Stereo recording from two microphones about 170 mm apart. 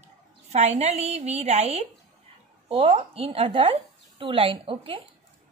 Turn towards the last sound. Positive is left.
turn(degrees=-30)  # may be behind; listen again after turning